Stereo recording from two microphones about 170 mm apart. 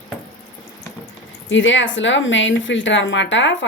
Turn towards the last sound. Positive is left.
turn(degrees=90)